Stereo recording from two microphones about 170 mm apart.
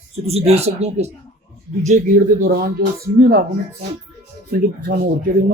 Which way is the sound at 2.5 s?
65° right (ahead or behind).